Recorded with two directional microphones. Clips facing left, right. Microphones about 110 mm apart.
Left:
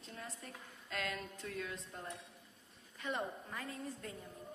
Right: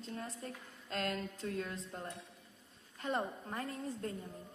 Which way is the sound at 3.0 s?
35° right (ahead or behind).